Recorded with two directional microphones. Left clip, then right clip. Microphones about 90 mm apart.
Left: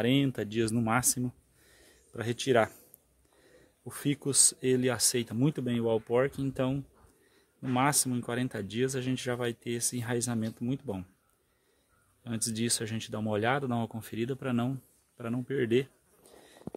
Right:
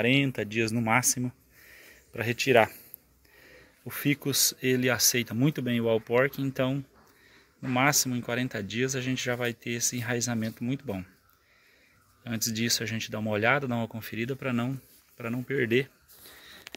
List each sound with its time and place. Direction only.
0.0 s speech: 70° left (ahead or behind)
0.3 s speech: 55° left (ahead or behind)
2.1 s speech: 25° left (ahead or behind)
3.9 s speech: 20° left (ahead or behind)
12.2 s speech: 30° left (ahead or behind)